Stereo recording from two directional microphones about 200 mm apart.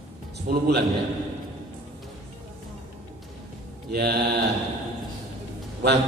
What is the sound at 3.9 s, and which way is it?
Speech, 55° right (ahead or behind).